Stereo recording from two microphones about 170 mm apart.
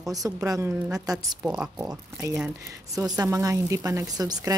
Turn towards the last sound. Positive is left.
turn(degrees=-20)  # may be behind; listen again after turning